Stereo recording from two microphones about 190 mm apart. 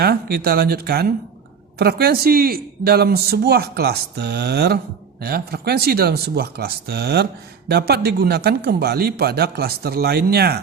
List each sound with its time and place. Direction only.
0.0 s speech: 55° right (ahead or behind)